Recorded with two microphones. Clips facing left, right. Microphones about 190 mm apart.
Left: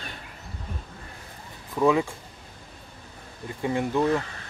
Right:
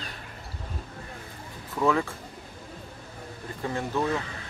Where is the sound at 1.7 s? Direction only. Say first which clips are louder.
Left 3 dB; 15° left (ahead or behind).